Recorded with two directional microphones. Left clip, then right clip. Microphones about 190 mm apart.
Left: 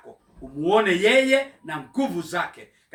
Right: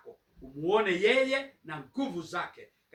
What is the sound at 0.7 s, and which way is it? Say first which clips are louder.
Speech: left 7 dB; 15° left (ahead or behind).